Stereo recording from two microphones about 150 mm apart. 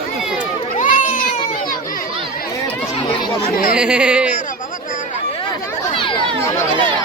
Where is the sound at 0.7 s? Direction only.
65° left (ahead or behind).